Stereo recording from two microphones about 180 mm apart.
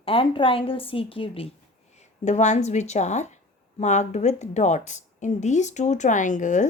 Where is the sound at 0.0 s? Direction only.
30° left (ahead or behind).